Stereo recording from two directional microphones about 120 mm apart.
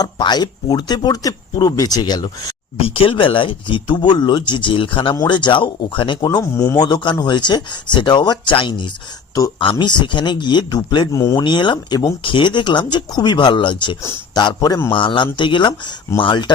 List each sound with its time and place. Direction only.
0.0 s speech: 35° left (ahead or behind)
2.8 s speech: 50° left (ahead or behind)
6.2 s a man's voice: 25° left (ahead or behind)
6.7 s speech: 35° left (ahead or behind)